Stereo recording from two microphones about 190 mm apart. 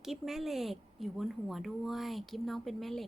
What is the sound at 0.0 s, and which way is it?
A woman's voice, centre (ahead or behind).